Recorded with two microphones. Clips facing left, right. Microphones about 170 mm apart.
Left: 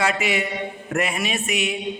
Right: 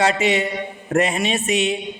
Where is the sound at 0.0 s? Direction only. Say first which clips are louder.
Right 4 dB; 25° right (ahead or behind).